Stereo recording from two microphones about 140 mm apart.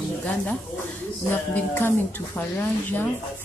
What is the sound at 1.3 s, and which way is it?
Speech, 15° left (ahead or behind).